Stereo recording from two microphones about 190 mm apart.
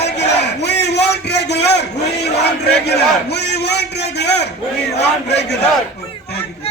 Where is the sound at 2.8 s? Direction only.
60° left (ahead or behind).